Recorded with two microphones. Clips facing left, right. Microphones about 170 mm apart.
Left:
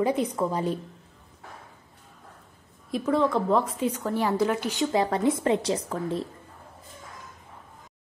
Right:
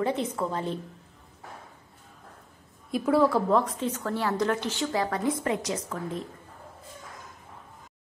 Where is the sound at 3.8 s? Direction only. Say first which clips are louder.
Left 3 dB; 10° left (ahead or behind); by 6.2 s 30° left (ahead or behind).